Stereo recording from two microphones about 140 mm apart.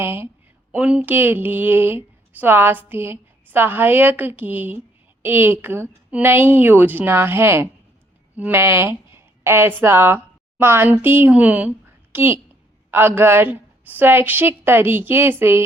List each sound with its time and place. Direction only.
0.0 s a woman's voice: 15° right (ahead or behind)